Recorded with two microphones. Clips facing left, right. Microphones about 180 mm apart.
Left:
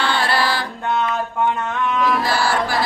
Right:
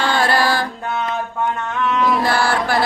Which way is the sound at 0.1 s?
45° right (ahead or behind).